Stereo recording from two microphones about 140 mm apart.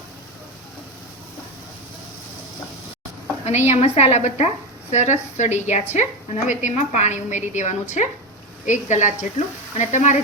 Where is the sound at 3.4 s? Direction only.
50° left (ahead or behind).